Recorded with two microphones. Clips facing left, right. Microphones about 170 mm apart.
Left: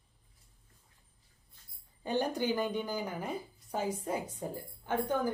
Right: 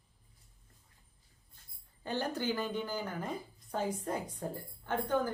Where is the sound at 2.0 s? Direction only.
15° left (ahead or behind).